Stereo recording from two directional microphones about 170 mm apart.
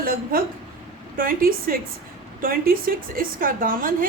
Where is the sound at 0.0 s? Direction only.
60° right (ahead or behind).